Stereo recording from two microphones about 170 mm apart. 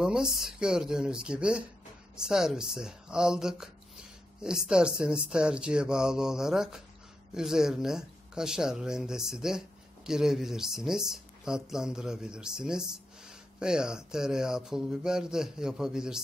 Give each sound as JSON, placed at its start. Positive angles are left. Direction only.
{"t": 0.0, "sound": "speech", "side_deg": -5}